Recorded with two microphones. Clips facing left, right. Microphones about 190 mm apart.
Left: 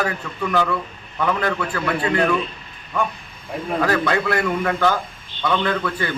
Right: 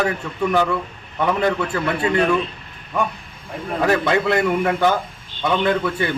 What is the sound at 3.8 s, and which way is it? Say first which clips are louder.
A man's voice: right 3 dB; 20° right (ahead or behind).